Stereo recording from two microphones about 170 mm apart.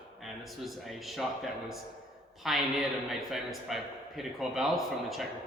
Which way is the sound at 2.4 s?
Centre (ahead or behind).